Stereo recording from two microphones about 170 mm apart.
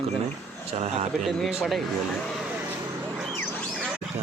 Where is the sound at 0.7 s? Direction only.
40° right (ahead or behind).